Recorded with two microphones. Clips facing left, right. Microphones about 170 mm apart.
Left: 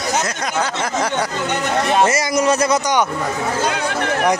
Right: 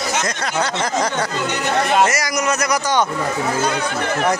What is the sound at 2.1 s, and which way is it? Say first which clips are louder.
Speech: left 4 dB; 30° left (ahead or behind).